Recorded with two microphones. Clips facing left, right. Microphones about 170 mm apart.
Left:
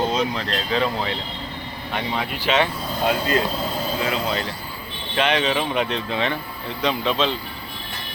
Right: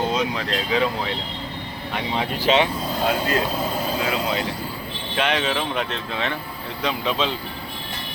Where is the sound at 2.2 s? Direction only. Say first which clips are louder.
Right 4 dB; 25° right (ahead or behind).